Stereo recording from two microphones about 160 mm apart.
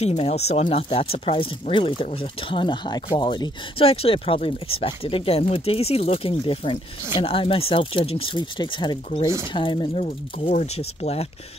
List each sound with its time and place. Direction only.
0.0 s speech: 40° left (ahead or behind)